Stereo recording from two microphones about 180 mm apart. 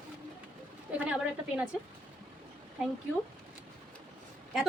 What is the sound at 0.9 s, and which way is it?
Speech, 5° right (ahead or behind).